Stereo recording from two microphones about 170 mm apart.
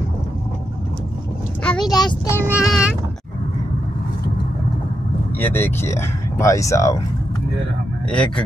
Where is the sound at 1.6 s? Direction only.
5° left (ahead or behind).